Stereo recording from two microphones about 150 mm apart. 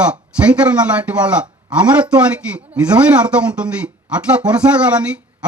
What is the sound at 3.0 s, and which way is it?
A man's voice, 10° right (ahead or behind).